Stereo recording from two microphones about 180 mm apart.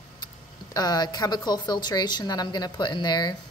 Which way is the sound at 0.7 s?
20° left (ahead or behind).